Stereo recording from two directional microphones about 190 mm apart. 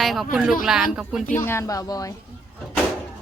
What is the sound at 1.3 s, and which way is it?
Speech, 10° left (ahead or behind).